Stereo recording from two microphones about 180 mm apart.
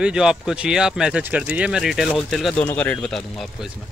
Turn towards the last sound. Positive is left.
turn(degrees=0)  # may be behind; listen again after turning